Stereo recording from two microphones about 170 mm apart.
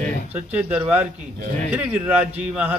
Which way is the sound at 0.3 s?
10° right (ahead or behind).